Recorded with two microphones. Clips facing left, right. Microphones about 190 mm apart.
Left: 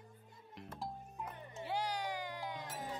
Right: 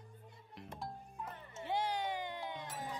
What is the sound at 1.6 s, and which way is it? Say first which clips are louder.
Music: right 2 dB; 25° right (ahead or behind).